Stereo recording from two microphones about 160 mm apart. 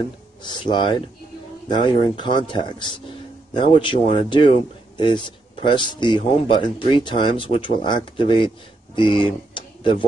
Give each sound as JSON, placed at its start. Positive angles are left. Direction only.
{"t": 0.4, "sound": "speech", "side_deg": 30}